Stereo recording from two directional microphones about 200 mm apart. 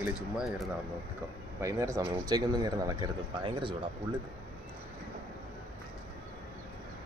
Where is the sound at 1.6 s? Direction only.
15° right (ahead or behind).